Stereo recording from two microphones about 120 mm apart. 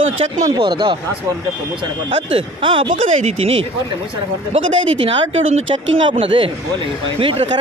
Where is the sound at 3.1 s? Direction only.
70° right (ahead or behind).